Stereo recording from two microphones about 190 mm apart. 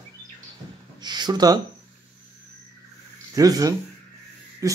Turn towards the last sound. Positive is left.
turn(degrees=-15)  # may be behind; listen again after turning